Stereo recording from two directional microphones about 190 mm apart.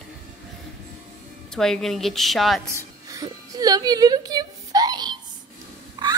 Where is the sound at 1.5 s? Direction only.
Centre (ahead or behind).